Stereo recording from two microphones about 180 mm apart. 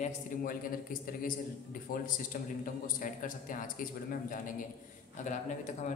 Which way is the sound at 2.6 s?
50° left (ahead or behind).